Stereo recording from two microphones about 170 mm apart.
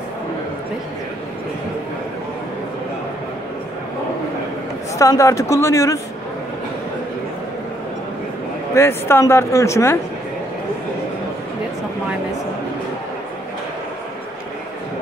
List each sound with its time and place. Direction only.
4.9 s a man's voice: 20° left (ahead or behind)
8.7 s speech: 15° left (ahead or behind)